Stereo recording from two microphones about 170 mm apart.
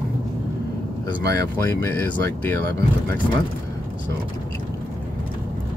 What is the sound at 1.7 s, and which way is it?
Speech, 10° left (ahead or behind).